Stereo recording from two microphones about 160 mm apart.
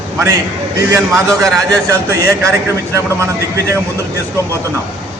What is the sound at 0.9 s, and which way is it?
Speech, 20° right (ahead or behind).